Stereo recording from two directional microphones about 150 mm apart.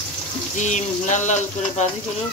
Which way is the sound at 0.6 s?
55° left (ahead or behind).